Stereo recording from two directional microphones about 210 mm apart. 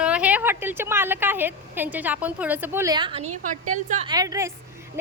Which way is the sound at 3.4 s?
40° right (ahead or behind).